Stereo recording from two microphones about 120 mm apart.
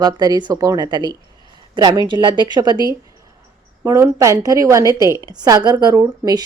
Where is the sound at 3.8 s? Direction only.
25° right (ahead or behind).